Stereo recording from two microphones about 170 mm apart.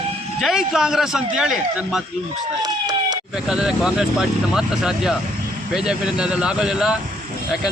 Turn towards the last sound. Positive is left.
turn(degrees=-5)  # may be behind; listen again after turning